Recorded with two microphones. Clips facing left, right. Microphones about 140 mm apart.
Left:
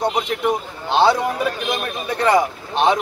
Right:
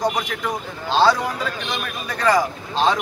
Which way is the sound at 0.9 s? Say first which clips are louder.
Left 2 dB; 20° left (ahead or behind).